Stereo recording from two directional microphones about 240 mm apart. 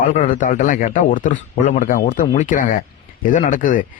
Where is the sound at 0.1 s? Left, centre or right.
Left.